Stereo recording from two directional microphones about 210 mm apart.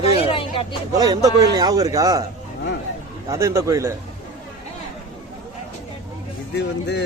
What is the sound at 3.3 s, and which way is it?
Speech, 15° right (ahead or behind).